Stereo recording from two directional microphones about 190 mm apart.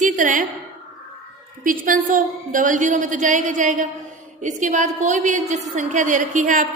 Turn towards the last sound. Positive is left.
turn(degrees=-45)  # may be behind; listen again after turning